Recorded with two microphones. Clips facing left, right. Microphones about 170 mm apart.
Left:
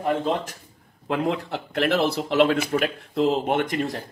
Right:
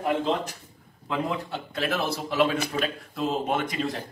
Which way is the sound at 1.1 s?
70° left (ahead or behind).